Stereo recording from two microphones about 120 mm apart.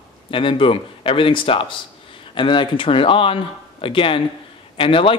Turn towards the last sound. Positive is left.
turn(degrees=50)  # may be behind; listen again after turning